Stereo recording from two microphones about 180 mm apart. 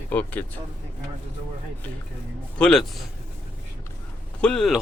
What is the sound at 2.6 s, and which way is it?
Speech, 5° left (ahead or behind).